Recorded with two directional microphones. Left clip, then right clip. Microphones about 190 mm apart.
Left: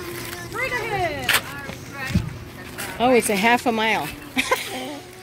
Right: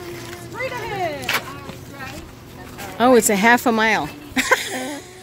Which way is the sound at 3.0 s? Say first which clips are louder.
Right 3 dB; 30° right (ahead or behind).